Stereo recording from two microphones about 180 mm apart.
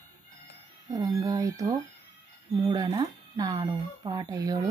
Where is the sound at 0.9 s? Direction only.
20° right (ahead or behind).